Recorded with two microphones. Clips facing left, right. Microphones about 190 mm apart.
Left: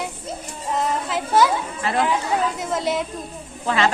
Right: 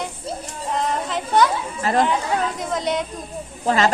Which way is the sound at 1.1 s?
5° left (ahead or behind).